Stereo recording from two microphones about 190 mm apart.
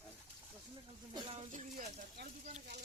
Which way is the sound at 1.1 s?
30° right (ahead or behind).